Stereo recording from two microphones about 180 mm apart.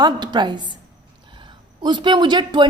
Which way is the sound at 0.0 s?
25° right (ahead or behind).